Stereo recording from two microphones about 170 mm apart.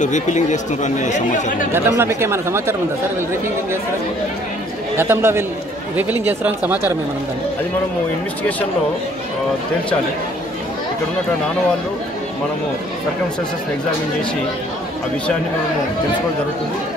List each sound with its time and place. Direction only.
0.0 s speech: 45° left (ahead or behind)
1.7 s speech: 15° right (ahead or behind)
4.9 s speech: 15° right (ahead or behind)